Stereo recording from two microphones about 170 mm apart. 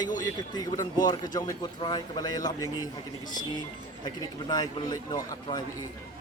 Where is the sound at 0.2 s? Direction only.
20° left (ahead or behind).